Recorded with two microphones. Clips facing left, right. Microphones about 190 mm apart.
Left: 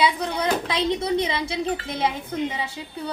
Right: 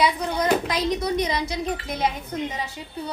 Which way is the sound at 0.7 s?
25° left (ahead or behind).